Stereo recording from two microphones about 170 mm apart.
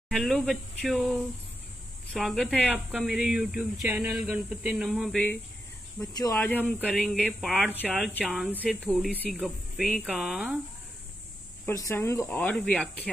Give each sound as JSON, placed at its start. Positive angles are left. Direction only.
{"t": 0.1, "sound": "speech", "side_deg": 0}
{"t": 5.9, "sound": "speech", "side_deg": 20}
{"t": 6.3, "sound": "speech", "side_deg": 10}
{"t": 8.8, "sound": "speech", "side_deg": 0}
{"t": 11.6, "sound": "speech", "side_deg": 15}